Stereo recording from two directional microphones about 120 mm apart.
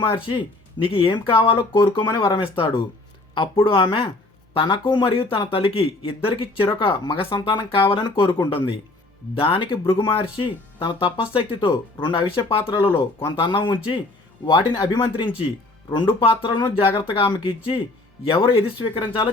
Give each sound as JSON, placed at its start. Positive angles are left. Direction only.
{"t": 0.3, "sound": "speech", "side_deg": 45}